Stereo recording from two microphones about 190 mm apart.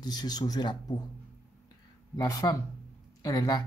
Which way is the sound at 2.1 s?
15° left (ahead or behind).